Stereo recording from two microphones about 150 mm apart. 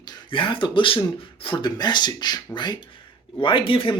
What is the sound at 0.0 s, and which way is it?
Speech, 30° left (ahead or behind).